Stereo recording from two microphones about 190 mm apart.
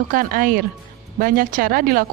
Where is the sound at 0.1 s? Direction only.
45° right (ahead or behind).